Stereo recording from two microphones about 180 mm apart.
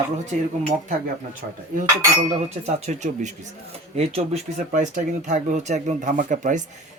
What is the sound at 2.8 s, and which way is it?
Speech, 40° right (ahead or behind).